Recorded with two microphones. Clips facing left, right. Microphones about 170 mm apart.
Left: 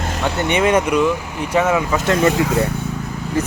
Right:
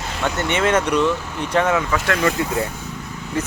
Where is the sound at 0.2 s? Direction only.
15° left (ahead or behind).